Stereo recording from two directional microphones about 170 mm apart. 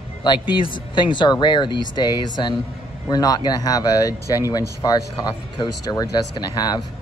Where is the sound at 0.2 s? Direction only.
30° left (ahead or behind).